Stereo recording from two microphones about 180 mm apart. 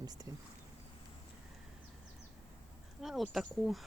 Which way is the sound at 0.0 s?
20° right (ahead or behind).